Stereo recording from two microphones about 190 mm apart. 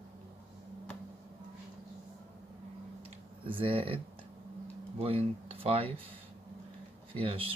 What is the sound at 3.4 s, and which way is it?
Speech, 30° right (ahead or behind).